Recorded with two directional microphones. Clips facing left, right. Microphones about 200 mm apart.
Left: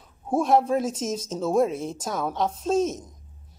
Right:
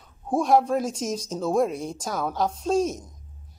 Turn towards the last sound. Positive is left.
turn(degrees=0)  # may be behind; listen again after turning